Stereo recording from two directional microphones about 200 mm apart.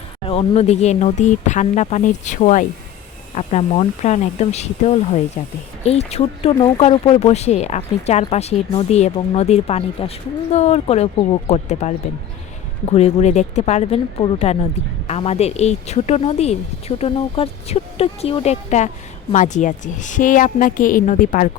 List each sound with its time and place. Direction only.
0.3 s speech: 30° left (ahead or behind)